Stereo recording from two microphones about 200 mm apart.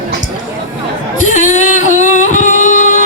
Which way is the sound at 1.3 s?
35° left (ahead or behind).